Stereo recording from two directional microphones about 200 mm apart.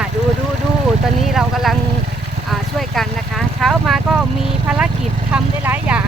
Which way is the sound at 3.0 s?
Centre (ahead or behind).